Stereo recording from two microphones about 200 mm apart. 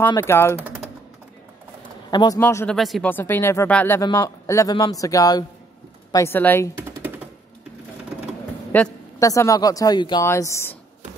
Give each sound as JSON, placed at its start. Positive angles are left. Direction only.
{"t": 0.0, "sound": "speech", "side_deg": 15}
{"t": 2.0, "sound": "speech", "side_deg": 20}
{"t": 6.8, "sound": "typewriter", "side_deg": -10}
{"t": 8.7, "sound": "speech", "side_deg": 10}